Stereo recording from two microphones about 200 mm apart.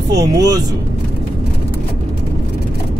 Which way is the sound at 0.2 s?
20° right (ahead or behind).